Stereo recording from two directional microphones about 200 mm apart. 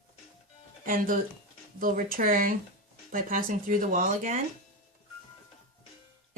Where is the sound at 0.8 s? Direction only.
45° right (ahead or behind).